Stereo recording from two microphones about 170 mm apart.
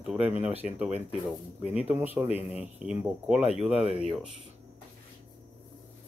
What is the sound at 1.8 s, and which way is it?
Speech, 10° right (ahead or behind).